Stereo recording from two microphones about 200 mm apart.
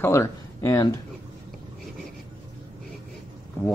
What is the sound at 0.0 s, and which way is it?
Speech, 15° left (ahead or behind).